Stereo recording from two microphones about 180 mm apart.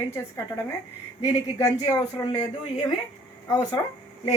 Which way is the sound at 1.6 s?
20° left (ahead or behind).